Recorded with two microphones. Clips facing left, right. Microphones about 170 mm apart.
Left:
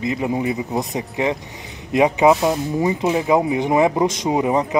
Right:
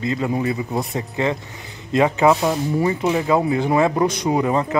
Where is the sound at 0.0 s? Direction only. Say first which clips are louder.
Even; 15° left (ahead or behind).